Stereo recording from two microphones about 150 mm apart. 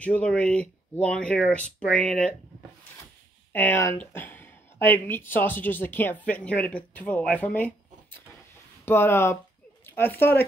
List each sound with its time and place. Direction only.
0.0 s speech: 10° left (ahead or behind)
3.5 s speech: 15° left (ahead or behind)